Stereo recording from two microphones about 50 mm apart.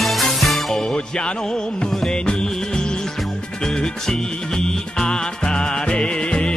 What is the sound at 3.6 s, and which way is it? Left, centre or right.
Music, centre.